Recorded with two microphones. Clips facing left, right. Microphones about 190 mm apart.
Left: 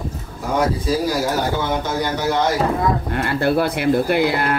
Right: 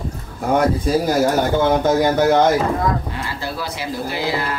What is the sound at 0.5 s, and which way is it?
Speech, 55° right (ahead or behind).